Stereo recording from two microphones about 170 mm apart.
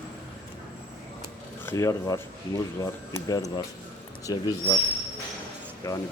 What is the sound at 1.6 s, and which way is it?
Speech, 20° left (ahead or behind).